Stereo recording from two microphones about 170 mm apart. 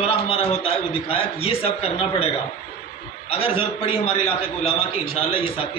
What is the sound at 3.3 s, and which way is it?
A man's voice, 35° left (ahead or behind).